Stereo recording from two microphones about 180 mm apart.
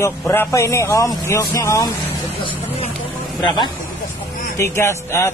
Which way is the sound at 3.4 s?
25° left (ahead or behind).